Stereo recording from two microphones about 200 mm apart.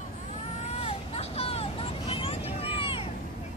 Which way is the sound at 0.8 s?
30° left (ahead or behind).